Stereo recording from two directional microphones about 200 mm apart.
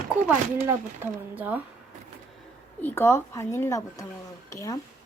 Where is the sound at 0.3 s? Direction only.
10° right (ahead or behind).